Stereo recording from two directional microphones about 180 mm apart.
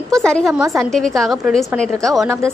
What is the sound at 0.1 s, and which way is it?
A woman's voice, 5° left (ahead or behind).